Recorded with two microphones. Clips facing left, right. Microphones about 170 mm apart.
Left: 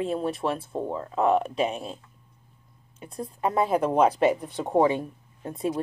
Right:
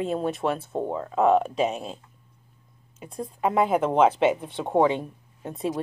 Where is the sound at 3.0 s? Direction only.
Centre (ahead or behind).